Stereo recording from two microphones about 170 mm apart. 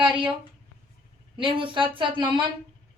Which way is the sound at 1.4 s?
30° right (ahead or behind).